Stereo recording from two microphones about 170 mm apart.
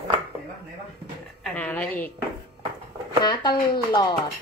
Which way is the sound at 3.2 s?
25° left (ahead or behind).